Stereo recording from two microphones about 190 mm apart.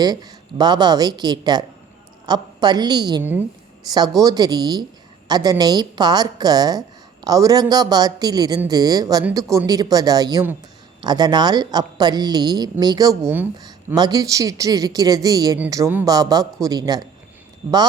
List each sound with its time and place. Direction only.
0.0 s speech: 20° right (ahead or behind)